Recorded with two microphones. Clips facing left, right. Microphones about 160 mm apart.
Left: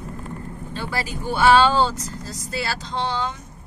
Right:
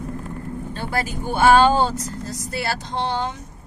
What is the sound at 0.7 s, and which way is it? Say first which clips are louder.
Speech: right 2 dB; 50° right (ahead or behind).